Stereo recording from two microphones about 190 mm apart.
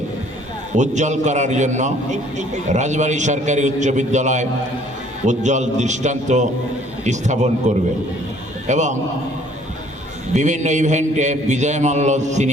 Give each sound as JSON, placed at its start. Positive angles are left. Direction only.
{"t": 0.7, "sound": "a man's voice", "side_deg": -40}
{"t": 10.3, "sound": "a man's voice", "side_deg": -40}